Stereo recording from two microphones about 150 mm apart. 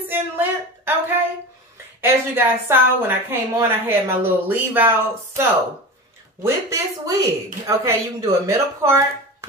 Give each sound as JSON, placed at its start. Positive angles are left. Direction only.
{"t": 0.0, "sound": "a sound", "side_deg": -15}
{"t": 2.0, "sound": "a woman's voice", "side_deg": -15}
{"t": 6.4, "sound": "speech", "side_deg": -20}